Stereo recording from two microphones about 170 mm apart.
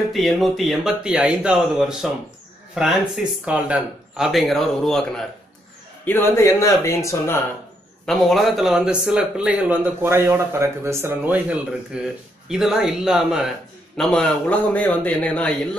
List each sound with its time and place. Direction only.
0.1 s speech: centre (ahead or behind)
3.4 s speech: 5° right (ahead or behind)
6.0 s a man's voice: 15° left (ahead or behind)
8.0 s speech: centre (ahead or behind)
13.9 s a man's voice: 5° left (ahead or behind)